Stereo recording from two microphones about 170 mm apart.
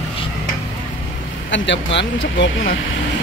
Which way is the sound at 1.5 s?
90° left.